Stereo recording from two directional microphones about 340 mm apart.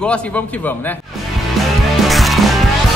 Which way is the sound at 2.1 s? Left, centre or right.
Centre.